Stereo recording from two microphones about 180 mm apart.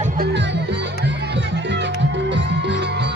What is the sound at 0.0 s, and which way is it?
Music, 55° right (ahead or behind).